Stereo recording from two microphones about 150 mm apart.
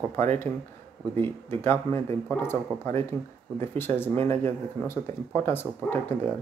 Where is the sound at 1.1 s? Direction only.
15° left (ahead or behind).